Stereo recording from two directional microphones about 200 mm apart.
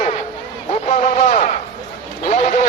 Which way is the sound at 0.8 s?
35° left (ahead or behind).